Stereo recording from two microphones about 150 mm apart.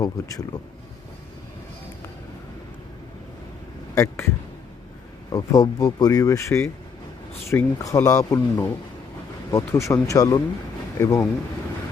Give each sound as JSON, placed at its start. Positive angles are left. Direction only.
{"t": 0.0, "sound": "speech", "side_deg": 25}
{"t": 3.9, "sound": "speech", "side_deg": 20}
{"t": 5.3, "sound": "speech", "side_deg": 25}